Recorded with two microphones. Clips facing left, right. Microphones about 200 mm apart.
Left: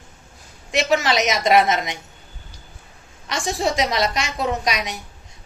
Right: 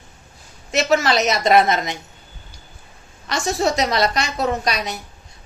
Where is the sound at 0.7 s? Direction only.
15° left (ahead or behind).